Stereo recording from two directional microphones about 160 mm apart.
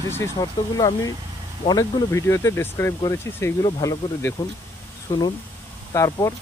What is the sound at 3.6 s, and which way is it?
Speech, 25° left (ahead or behind).